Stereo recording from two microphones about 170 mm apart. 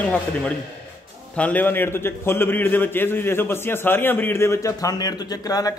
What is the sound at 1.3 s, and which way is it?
A man's voice, 10° left (ahead or behind).